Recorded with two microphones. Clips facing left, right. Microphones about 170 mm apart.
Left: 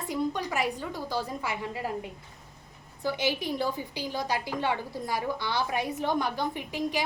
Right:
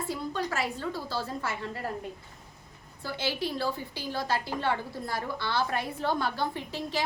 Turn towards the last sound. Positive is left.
turn(degrees=15)  # may be behind; listen again after turning